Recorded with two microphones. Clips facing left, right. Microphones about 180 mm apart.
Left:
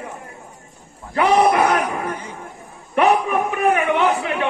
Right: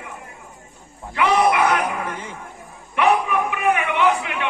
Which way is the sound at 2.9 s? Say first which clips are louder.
Left 2 dB; 40° left (ahead or behind).